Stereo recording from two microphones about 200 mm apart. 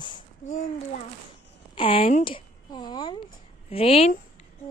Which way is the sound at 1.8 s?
25° left (ahead or behind).